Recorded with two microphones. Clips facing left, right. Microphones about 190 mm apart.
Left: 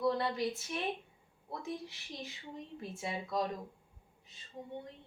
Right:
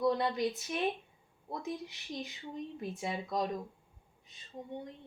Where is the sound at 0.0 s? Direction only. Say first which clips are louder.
Right 2 dB; 20° right (ahead or behind).